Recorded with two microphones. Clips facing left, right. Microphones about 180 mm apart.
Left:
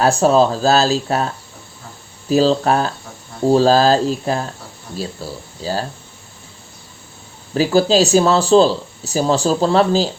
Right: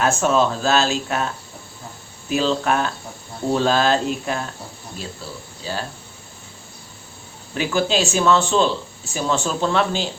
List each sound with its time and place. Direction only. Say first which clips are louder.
0.0 s speech: left 5 dB; 35° left (ahead or behind)
2.3 s speech: left 6 dB; 35° left (ahead or behind)
7.5 s speech: left 7 dB; 35° left (ahead or behind)